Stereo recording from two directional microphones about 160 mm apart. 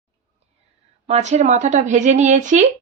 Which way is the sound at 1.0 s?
45° right (ahead or behind).